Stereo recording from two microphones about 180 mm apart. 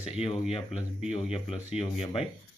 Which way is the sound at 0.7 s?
5° right (ahead or behind).